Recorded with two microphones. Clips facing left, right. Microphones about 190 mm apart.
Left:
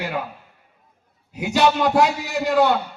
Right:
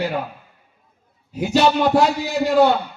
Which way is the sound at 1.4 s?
30° right (ahead or behind).